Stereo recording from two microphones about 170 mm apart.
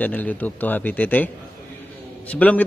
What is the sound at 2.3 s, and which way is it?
Speech, 10° left (ahead or behind).